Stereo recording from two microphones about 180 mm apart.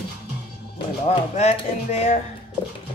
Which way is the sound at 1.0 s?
40° left (ahead or behind).